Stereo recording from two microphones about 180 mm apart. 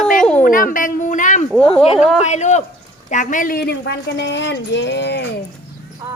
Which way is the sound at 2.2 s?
40° left (ahead or behind).